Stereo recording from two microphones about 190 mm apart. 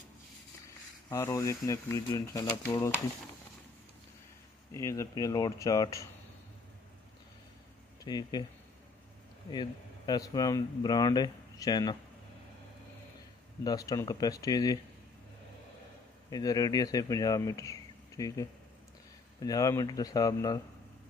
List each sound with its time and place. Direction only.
1.1 s speech: 15° left (ahead or behind)
4.7 s speech: 15° left (ahead or behind)
8.0 s speech: 20° left (ahead or behind)
9.5 s speech: 20° left (ahead or behind)
13.7 s speech: 20° left (ahead or behind)
16.3 s speech: 20° left (ahead or behind)